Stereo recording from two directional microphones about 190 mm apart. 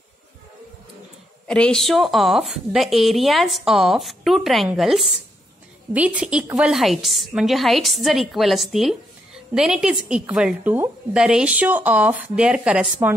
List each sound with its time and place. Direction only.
1.5 s a woman's voice: 5° left (ahead or behind)